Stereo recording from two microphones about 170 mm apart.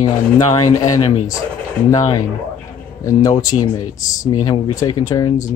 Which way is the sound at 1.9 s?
20° left (ahead or behind).